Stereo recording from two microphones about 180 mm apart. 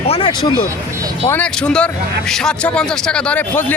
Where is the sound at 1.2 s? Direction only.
10° left (ahead or behind).